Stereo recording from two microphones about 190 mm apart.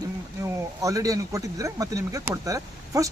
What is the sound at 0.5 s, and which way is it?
A man's voice, 15° right (ahead or behind).